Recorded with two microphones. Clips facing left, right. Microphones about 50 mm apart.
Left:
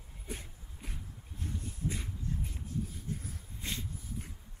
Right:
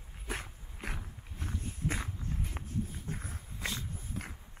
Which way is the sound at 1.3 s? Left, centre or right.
Right.